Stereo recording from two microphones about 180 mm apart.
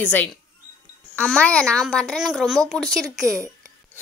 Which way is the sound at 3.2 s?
15° right (ahead or behind).